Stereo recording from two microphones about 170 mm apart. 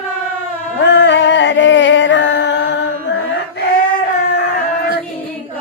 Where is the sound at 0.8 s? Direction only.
90° left.